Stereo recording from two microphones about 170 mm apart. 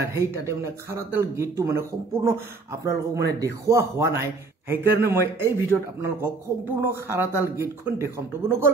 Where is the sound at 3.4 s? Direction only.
15° right (ahead or behind).